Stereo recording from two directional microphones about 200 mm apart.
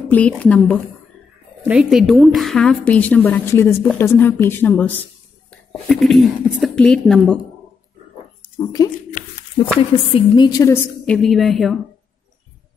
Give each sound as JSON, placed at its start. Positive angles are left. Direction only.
{"t": 0.1, "sound": "a woman's voice", "side_deg": 5}
{"t": 1.6, "sound": "a woman's voice", "side_deg": -5}
{"t": 8.5, "sound": "a woman's voice", "side_deg": 20}
{"t": 11.1, "sound": "speech", "side_deg": 0}